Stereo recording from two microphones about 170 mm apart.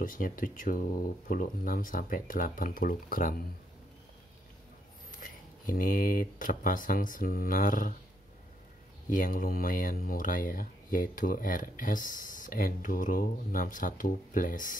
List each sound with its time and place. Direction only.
0.0 s speech: 55° left (ahead or behind)
5.2 s speech: 55° left (ahead or behind)
9.1 s speech: 55° left (ahead or behind)